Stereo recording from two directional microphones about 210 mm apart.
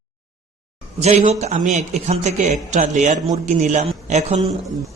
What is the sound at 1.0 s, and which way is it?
A man's voice, 30° right (ahead or behind).